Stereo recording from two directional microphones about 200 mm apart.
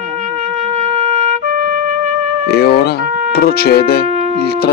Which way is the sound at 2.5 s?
55° left (ahead or behind).